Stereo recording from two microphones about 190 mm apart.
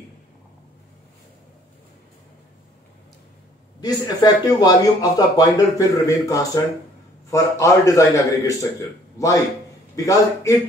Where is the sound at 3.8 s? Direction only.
20° left (ahead or behind).